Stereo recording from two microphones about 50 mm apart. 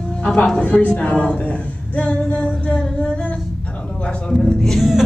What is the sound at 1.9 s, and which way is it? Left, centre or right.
Singing, left.